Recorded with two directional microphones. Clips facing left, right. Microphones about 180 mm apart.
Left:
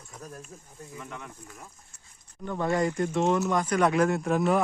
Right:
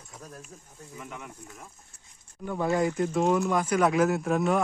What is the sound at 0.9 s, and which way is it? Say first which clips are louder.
Speech: even; 5° right (ahead or behind).